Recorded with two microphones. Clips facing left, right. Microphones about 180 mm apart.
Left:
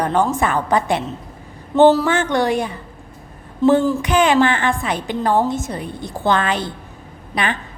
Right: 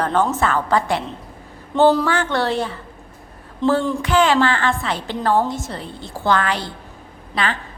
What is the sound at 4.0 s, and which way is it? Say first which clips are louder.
A woman's voice: left 1 dB; 20° left (ahead or behind).